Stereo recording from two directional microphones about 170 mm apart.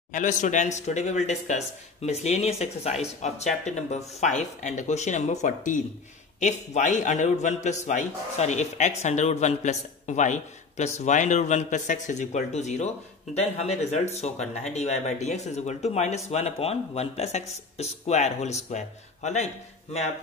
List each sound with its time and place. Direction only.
0.1 s a man's voice: 45° left (ahead or behind)